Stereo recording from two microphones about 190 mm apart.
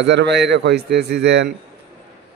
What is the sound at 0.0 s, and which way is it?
Speech, 65° right (ahead or behind).